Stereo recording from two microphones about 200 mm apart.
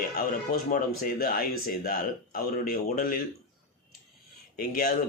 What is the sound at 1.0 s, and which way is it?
Speech, 45° left (ahead or behind).